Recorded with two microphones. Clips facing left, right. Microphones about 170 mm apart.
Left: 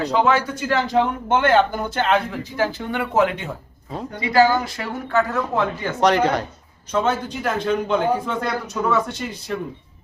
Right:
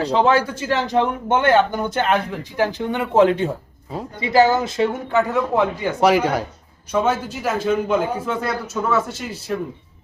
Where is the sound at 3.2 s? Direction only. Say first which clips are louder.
Right 6 dB; 35° right (ahead or behind).